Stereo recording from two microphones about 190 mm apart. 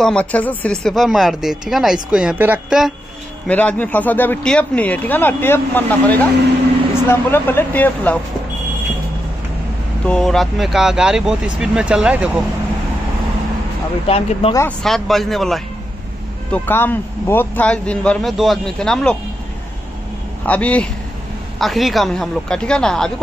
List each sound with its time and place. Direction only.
0.0 s speech: 5° left (ahead or behind)
3.4 s speech: 10° left (ahead or behind)
10.0 s speech: 5° left (ahead or behind)
14.0 s speech: 30° left (ahead or behind)
14.8 s speech: centre (ahead or behind)
20.4 s speech: 5° left (ahead or behind)